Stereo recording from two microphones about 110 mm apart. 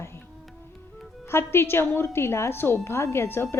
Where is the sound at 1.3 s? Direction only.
20° left (ahead or behind).